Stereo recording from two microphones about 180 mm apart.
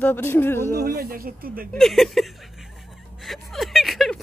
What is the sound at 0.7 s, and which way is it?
Speech, 55° right (ahead or behind).